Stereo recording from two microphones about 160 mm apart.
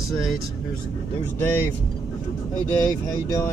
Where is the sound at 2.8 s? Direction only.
25° left (ahead or behind).